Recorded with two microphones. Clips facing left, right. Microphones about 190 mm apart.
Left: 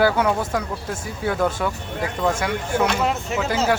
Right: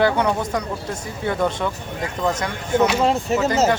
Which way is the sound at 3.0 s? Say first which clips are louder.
Right 4 dB; 35° right (ahead or behind).